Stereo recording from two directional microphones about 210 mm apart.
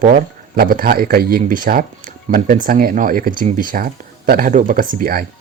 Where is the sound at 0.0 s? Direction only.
40° right (ahead or behind).